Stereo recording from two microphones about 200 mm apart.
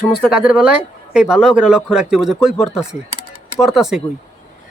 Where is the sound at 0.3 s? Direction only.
5° right (ahead or behind).